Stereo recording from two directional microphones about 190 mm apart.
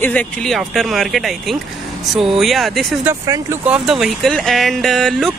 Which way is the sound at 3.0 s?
15° right (ahead or behind).